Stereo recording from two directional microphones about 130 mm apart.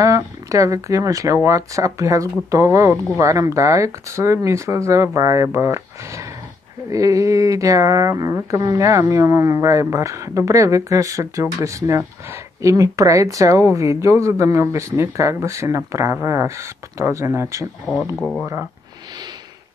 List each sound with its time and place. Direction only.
0.0 s speech: 25° right (ahead or behind)
17.9 s speech: centre (ahead or behind)
18.4 s speech: 20° right (ahead or behind)